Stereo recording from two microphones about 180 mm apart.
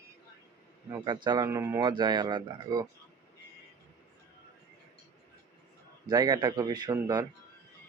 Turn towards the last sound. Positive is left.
turn(degrees=-20)  # may be behind; listen again after turning